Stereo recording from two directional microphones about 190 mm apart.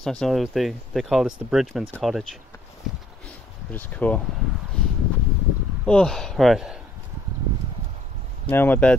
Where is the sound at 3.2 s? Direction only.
10° left (ahead or behind).